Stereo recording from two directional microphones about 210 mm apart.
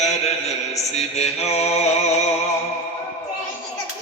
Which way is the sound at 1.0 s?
30° left (ahead or behind).